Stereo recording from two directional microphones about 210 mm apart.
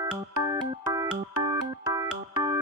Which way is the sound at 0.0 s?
15° right (ahead or behind).